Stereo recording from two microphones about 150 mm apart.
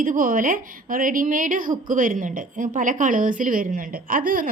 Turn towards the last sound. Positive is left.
turn(degrees=-70)  # may be behind; listen again after turning